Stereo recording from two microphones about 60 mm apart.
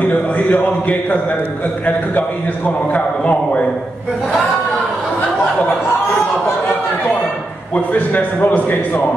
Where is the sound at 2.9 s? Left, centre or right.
Left.